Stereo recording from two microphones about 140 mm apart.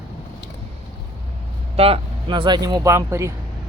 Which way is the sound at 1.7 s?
45° right (ahead or behind).